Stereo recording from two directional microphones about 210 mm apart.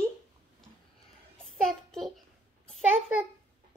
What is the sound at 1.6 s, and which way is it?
Speech, centre (ahead or behind).